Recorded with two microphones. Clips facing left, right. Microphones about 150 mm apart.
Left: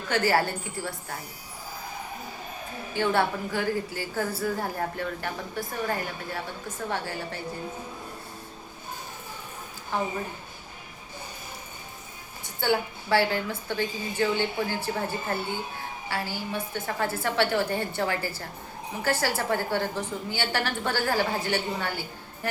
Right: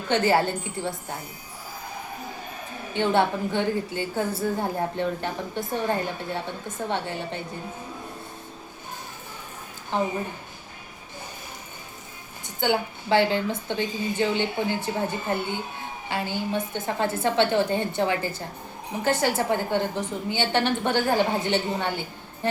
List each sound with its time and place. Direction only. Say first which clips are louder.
0.1 s a woman's voice: right 3 dB; 25° right (ahead or behind)
2.9 s a woman's voice: right 3 dB; 20° right (ahead or behind)
12.5 s a woman's voice: right 1 dB; 20° right (ahead or behind)